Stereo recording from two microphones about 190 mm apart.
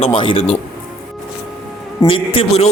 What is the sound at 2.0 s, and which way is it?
Speech, 30° left (ahead or behind).